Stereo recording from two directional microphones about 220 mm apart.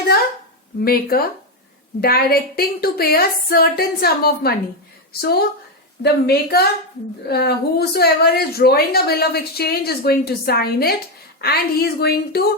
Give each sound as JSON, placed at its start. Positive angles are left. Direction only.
{"t": 0.9, "sound": "a woman's voice", "side_deg": 45}